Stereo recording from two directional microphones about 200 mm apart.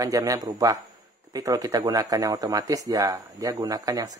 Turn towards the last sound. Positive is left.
turn(degrees=-20)  # may be behind; listen again after turning